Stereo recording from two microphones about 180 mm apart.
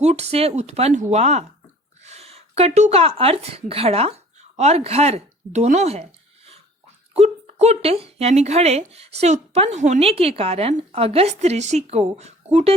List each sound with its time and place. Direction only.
0.0 s speech: 35° right (ahead or behind)